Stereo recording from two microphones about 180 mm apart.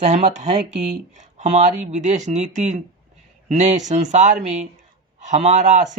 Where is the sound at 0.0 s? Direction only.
40° right (ahead or behind).